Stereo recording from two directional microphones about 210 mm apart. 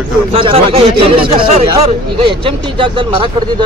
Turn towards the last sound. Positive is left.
turn(degrees=-25)  # may be behind; listen again after turning